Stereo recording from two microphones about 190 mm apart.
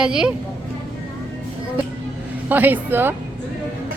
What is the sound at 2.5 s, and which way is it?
Speech, 10° right (ahead or behind).